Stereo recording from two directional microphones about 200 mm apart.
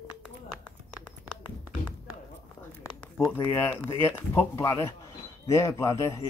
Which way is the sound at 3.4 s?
10° left (ahead or behind).